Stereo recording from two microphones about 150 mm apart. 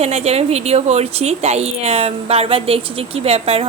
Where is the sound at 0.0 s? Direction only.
45° right (ahead or behind).